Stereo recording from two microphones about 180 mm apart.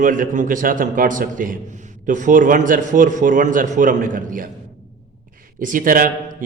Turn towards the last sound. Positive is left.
turn(degrees=-50)  # may be behind; listen again after turning